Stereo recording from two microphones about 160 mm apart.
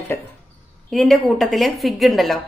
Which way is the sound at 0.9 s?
Centre (ahead or behind).